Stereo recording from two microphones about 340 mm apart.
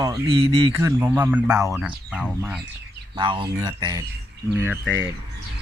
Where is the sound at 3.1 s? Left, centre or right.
Centre.